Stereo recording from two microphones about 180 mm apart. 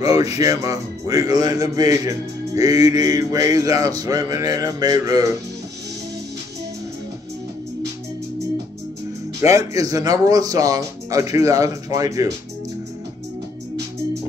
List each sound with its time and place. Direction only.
0.0 s speech: 20° right (ahead or behind)
9.4 s speech: 20° right (ahead or behind)